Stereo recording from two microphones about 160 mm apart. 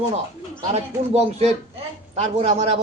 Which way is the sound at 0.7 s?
40° right (ahead or behind).